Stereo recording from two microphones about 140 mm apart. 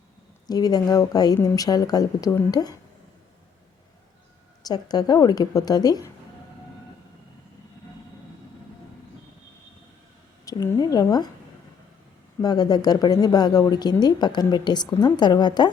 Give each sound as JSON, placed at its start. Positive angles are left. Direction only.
{"t": 0.4, "sound": "speech", "side_deg": 30}
{"t": 4.6, "sound": "speech", "side_deg": 30}
{"t": 10.4, "sound": "speech", "side_deg": 25}
{"t": 12.4, "sound": "speech", "side_deg": 30}